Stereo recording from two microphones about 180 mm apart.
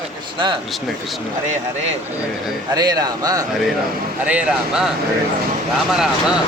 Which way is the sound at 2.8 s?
20° right (ahead or behind).